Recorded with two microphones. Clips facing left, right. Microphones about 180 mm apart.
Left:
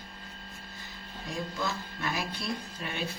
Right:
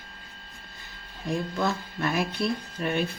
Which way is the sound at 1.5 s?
60° right (ahead or behind).